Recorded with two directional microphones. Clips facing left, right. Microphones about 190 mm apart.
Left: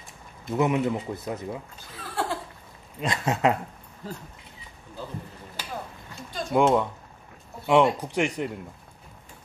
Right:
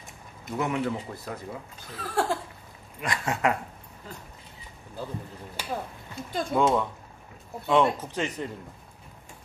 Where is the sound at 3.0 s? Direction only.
25° left (ahead or behind).